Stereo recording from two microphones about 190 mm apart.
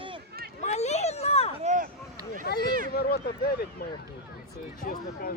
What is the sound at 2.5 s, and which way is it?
Speech, 55° left (ahead or behind).